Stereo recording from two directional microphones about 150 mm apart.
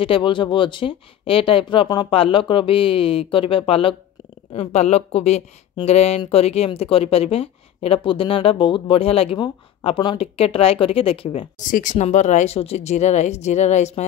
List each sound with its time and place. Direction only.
0.0 s speech: 35° left (ahead or behind)
11.6 s speech: 60° left (ahead or behind)